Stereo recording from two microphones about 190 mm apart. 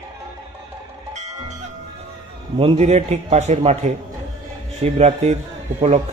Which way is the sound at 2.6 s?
35° right (ahead or behind).